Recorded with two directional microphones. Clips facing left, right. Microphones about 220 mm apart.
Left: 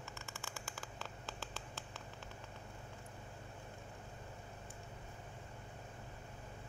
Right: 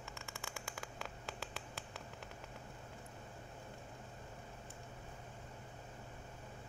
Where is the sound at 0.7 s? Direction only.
15° right (ahead or behind).